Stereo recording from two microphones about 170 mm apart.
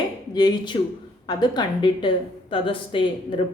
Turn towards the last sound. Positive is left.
turn(degrees=30)  # may be behind; listen again after turning